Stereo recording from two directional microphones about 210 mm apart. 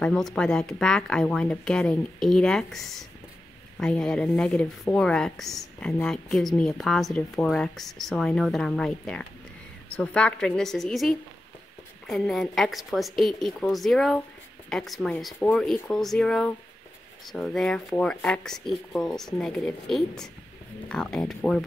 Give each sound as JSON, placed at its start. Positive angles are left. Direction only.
{"t": 0.0, "sound": "speech", "side_deg": 5}